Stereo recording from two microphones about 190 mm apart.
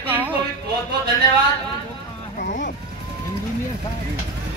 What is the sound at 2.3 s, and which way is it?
Speech, 45° left (ahead or behind).